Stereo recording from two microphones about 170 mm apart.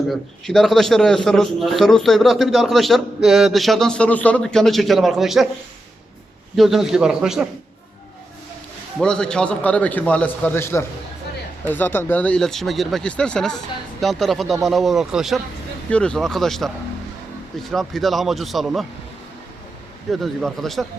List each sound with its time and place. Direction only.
0.1 s a man's voice: centre (ahead or behind)
6.6 s a man's voice: centre (ahead or behind)
9.0 s a man's voice: 5° left (ahead or behind)
20.1 s a man's voice: centre (ahead or behind)